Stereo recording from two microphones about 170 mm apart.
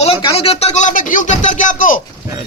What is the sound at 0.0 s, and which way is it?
Speech, 35° left (ahead or behind).